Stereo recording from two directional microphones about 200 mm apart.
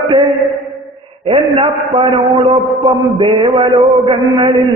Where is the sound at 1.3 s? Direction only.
25° right (ahead or behind).